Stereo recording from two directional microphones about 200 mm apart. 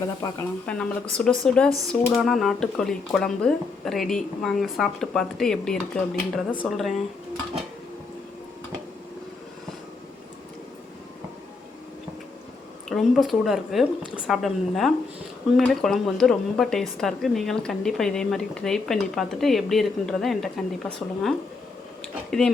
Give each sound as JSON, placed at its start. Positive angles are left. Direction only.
{"t": 0.2, "sound": "speech", "side_deg": 20}
{"t": 0.7, "sound": "a woman's voice", "side_deg": 5}
{"t": 12.9, "sound": "a woman's voice", "side_deg": 0}